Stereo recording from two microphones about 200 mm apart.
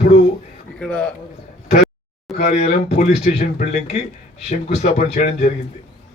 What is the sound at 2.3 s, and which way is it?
A man's voice, 35° left (ahead or behind).